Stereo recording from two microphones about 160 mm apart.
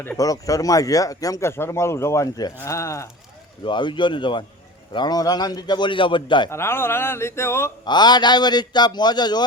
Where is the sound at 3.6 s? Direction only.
30° left (ahead or behind).